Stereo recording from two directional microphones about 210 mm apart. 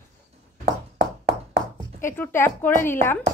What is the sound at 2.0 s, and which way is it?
Speech, 10° left (ahead or behind).